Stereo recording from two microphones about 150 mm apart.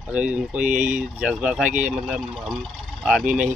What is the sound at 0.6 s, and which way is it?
Speech, 55° right (ahead or behind).